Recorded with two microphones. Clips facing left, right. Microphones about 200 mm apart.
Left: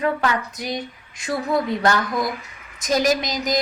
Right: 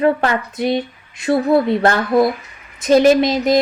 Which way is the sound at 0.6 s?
25° right (ahead or behind).